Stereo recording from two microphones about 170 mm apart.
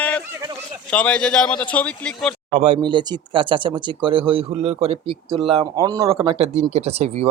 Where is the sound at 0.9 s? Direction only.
5° left (ahead or behind).